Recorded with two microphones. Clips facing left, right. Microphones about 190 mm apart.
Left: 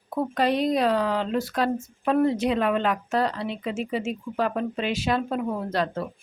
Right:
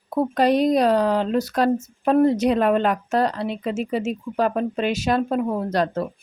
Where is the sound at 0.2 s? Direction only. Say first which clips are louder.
Right 5 dB; 40° right (ahead or behind).